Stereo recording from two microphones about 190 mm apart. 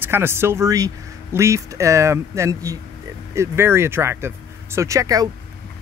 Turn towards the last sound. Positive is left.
turn(degrees=-15)  # may be behind; listen again after turning